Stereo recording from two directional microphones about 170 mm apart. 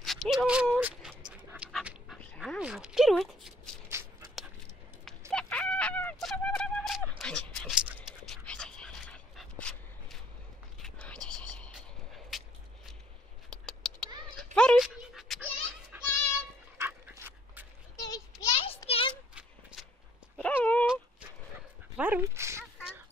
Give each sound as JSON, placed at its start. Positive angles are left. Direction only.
{"t": 0.0, "sound": "dog", "side_deg": 0}
{"t": 2.6, "sound": "a sound", "side_deg": -5}
{"t": 5.3, "sound": "fowl", "side_deg": 5}
{"t": 7.8, "sound": "a sound", "side_deg": -5}
{"t": 8.5, "sound": "dog", "side_deg": 5}
{"t": 10.8, "sound": "whispering", "side_deg": 5}
{"t": 12.3, "sound": "a sound", "side_deg": 0}
{"t": 13.5, "sound": "cat", "side_deg": 5}
{"t": 14.4, "sound": "pant", "side_deg": 5}
{"t": 15.9, "sound": "music", "side_deg": -10}
{"t": 16.7, "sound": "dog", "side_deg": -15}
{"t": 17.9, "sound": "a sound", "side_deg": 25}
{"t": 20.3, "sound": "dog", "side_deg": 10}
{"t": 20.8, "sound": "dog", "side_deg": -5}